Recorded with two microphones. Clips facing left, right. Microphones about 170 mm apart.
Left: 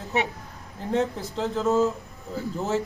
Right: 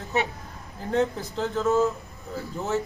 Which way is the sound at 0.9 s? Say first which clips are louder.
Right 1 dB; 30° left (ahead or behind).